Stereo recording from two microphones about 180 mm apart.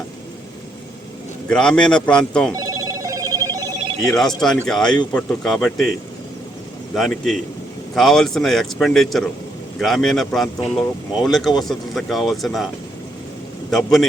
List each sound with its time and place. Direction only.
1.5 s speech: 5° left (ahead or behind)
2.5 s telephone: 20° right (ahead or behind)
4.0 s speech: centre (ahead or behind)
6.9 s speech: centre (ahead or behind)